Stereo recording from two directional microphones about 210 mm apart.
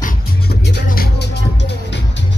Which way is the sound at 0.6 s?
50° left (ahead or behind).